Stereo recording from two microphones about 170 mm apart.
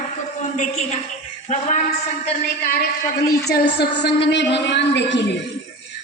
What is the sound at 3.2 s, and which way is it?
A woman's voice, 70° left (ahead or behind).